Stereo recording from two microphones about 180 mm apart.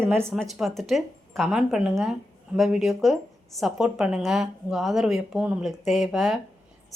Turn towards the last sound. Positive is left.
turn(degrees=0)  # may be behind; listen again after turning